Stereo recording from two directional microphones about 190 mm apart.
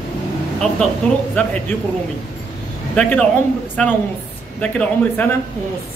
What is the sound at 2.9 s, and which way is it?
A man's voice, 5° left (ahead or behind).